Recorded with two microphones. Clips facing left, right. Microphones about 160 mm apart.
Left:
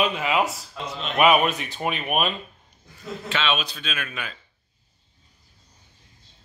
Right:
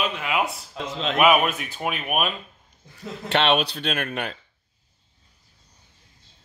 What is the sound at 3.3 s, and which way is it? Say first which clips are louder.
Speech: right 6 dB; 65° right (ahead or behind).